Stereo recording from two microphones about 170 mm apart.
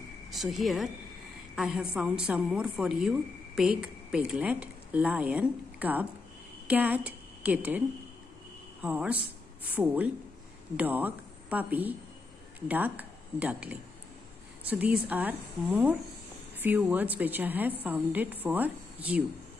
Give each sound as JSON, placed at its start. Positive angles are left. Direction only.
{"t": 0.3, "sound": "a woman's voice", "side_deg": 0}
{"t": 8.8, "sound": "a woman's voice", "side_deg": -10}